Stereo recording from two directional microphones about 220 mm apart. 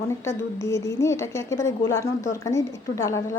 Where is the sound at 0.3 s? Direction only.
10° left (ahead or behind).